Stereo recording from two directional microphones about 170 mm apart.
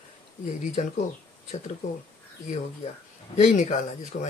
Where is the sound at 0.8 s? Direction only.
45° left (ahead or behind).